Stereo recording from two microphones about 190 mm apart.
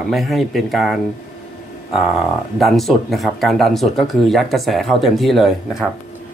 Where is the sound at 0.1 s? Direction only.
Centre (ahead or behind).